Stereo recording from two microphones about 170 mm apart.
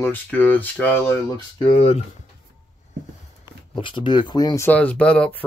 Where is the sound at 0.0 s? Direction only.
10° left (ahead or behind).